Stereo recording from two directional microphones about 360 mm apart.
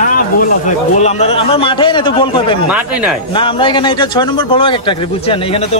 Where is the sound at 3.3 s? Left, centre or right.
Centre.